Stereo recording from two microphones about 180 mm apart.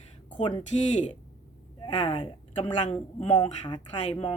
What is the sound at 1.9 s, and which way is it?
Speech, 30° left (ahead or behind).